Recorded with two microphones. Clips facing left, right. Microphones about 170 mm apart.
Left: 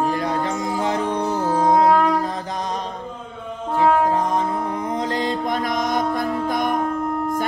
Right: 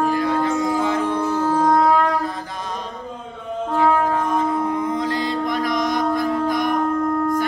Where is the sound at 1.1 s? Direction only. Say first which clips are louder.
Right 1 dB; 15° left (ahead or behind).